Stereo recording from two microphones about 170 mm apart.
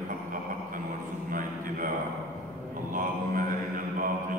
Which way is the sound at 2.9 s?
55° right (ahead or behind).